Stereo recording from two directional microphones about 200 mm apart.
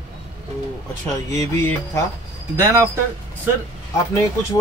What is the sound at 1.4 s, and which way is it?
Speech, 15° left (ahead or behind).